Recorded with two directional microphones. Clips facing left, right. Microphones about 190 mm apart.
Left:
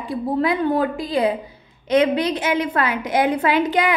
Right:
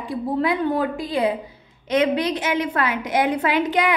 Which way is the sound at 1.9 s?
30° left (ahead or behind).